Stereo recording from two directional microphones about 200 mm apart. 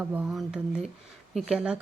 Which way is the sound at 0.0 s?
5° right (ahead or behind).